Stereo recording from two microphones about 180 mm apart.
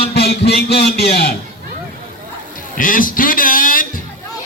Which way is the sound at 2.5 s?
50° left (ahead or behind).